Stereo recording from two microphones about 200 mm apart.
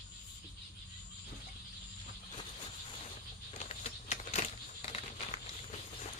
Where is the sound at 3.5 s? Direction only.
35° left (ahead or behind).